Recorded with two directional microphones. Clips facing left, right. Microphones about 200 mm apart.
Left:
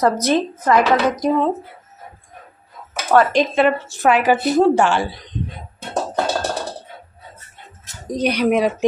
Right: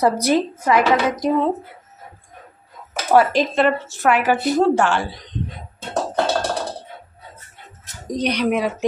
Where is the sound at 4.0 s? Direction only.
15° left (ahead or behind).